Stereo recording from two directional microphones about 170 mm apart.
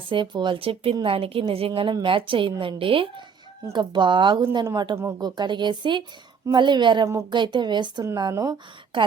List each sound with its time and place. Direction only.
0.1 s a woman's voice: 30° right (ahead or behind)
7.1 s speech: 15° right (ahead or behind)
7.3 s a woman's voice: 25° right (ahead or behind)